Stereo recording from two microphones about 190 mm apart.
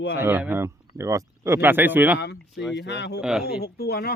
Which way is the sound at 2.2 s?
60° left (ahead or behind).